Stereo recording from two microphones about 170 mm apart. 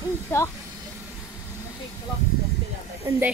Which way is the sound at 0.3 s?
15° left (ahead or behind).